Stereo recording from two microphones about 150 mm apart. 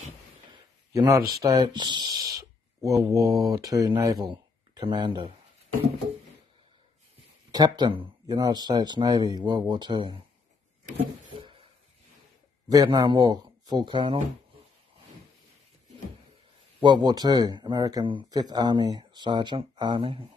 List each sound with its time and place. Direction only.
0.9 s speech: 20° right (ahead or behind)
7.5 s speech: 30° right (ahead or behind)
11.3 s a sound: 35° right (ahead or behind)
12.6 s speech: 25° right (ahead or behind)
16.8 s speech: 30° right (ahead or behind)